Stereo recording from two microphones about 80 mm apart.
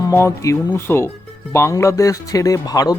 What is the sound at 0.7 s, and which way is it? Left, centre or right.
Speech, left.